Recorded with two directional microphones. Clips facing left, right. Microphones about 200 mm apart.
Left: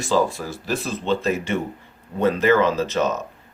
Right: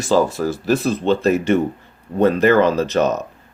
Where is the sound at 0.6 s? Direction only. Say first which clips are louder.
Right 6 dB; 60° right (ahead or behind).